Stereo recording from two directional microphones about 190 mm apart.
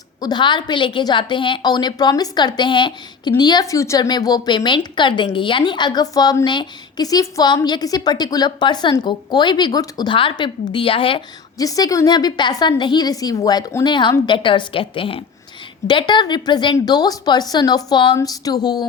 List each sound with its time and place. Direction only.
0.2 s a woman's voice: 20° left (ahead or behind)